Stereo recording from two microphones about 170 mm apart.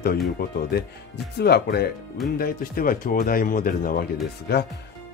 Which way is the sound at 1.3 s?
70° left (ahead or behind).